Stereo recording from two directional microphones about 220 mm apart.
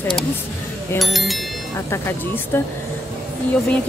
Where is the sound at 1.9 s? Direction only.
10° left (ahead or behind).